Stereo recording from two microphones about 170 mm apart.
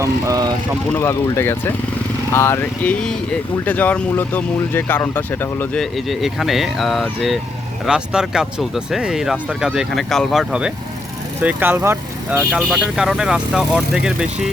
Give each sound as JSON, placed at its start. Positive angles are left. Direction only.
{"t": 0.0, "sound": "speech", "side_deg": -20}
{"t": 0.9, "sound": "speech", "side_deg": 15}
{"t": 5.8, "sound": "speech", "side_deg": 0}